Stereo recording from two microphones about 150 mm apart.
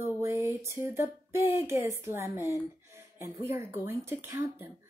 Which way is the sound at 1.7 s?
20° right (ahead or behind).